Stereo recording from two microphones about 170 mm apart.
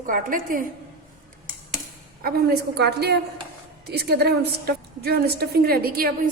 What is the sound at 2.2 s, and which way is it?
A woman's voice, 70° right (ahead or behind).